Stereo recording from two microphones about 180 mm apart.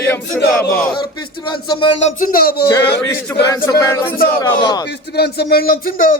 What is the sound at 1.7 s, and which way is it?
Speech, 25° left (ahead or behind).